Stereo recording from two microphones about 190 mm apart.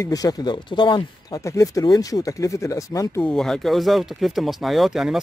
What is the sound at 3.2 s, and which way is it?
Speech, 5° left (ahead or behind).